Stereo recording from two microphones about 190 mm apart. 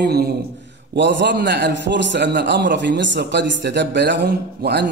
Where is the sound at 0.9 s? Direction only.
65° right (ahead or behind).